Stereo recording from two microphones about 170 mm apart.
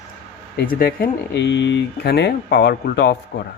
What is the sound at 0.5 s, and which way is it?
Speech, 60° left (ahead or behind).